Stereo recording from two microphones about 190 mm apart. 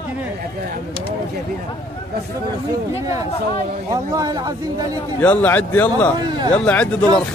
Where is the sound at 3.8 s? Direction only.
20° right (ahead or behind).